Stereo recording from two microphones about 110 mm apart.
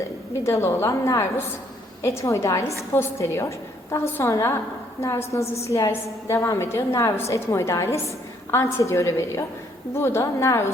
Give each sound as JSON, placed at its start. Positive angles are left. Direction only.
{"t": 0.4, "sound": "a woman's voice", "side_deg": 25}